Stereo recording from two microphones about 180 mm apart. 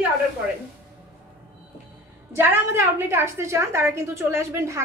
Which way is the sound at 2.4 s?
15° right (ahead or behind).